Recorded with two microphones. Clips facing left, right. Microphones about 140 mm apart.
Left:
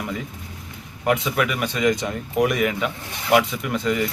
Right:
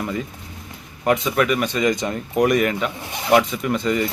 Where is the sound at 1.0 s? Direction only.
5° left (ahead or behind).